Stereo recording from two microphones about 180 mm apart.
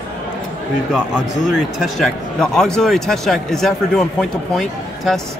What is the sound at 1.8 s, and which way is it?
A man's voice, centre (ahead or behind).